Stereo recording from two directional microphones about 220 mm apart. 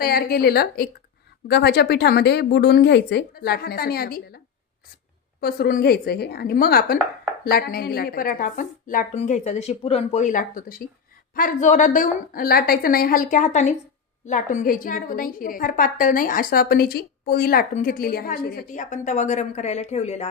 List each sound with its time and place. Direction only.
0.0 s a woman's voice: 45° left (ahead or behind)
5.4 s a woman's voice: 45° left (ahead or behind); by 20.2 s 30° left (ahead or behind)